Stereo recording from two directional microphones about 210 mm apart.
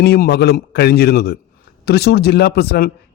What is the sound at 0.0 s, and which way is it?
A man's voice, 50° left (ahead or behind).